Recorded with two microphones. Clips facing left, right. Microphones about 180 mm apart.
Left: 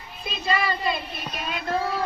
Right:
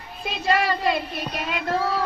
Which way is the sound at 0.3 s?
75° right (ahead or behind).